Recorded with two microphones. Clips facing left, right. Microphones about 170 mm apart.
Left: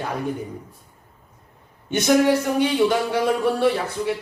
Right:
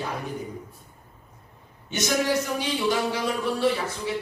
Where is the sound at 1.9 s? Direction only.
55° left (ahead or behind).